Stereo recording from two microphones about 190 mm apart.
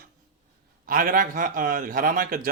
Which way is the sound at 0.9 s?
45° right (ahead or behind).